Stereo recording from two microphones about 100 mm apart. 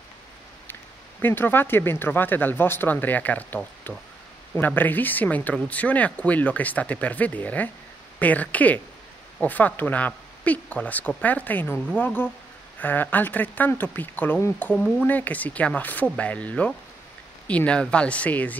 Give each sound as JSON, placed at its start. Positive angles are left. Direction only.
{"t": 1.2, "sound": "speech", "side_deg": 20}